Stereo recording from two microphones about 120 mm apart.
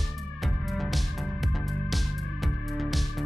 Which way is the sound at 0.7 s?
Centre (ahead or behind).